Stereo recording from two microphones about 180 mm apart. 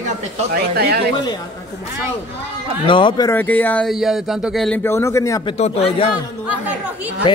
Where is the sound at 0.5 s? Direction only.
60° right (ahead or behind).